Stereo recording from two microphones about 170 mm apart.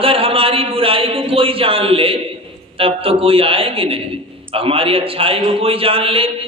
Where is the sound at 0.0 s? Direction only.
35° right (ahead or behind).